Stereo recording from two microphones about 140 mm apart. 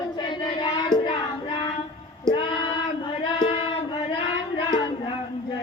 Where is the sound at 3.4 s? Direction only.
40° left (ahead or behind).